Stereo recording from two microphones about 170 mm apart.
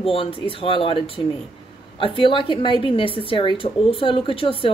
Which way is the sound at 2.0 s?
30° left (ahead or behind).